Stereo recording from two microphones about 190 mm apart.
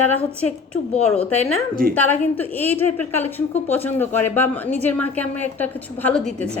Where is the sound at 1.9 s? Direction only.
10° left (ahead or behind).